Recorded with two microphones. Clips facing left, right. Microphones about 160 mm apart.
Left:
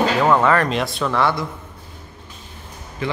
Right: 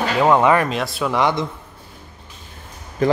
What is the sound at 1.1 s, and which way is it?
Speech, 15° right (ahead or behind).